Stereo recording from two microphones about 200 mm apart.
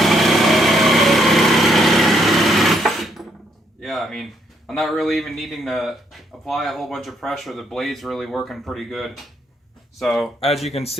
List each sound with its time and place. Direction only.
0.0 s light engine: centre (ahead or behind)
3.8 s a man's voice: centre (ahead or behind)
10.4 s speech: 30° left (ahead or behind)